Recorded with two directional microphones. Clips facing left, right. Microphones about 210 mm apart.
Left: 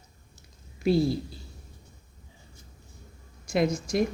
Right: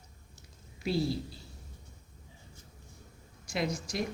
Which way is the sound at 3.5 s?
50° left (ahead or behind).